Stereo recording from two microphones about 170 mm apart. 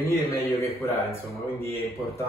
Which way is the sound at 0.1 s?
15° left (ahead or behind).